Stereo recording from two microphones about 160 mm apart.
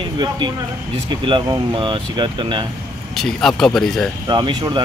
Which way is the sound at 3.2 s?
Centre (ahead or behind).